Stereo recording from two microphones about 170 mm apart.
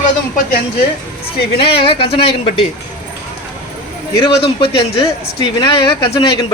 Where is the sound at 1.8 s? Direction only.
30° left (ahead or behind).